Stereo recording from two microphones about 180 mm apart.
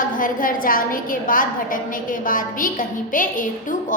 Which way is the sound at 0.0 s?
50° left (ahead or behind).